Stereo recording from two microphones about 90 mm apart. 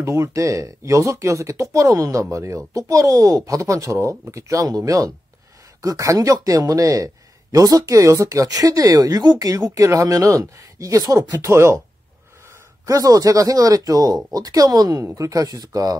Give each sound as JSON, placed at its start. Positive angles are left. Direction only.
{"t": 0.0, "sound": "speech", "side_deg": -35}
{"t": 12.8, "sound": "speech", "side_deg": -40}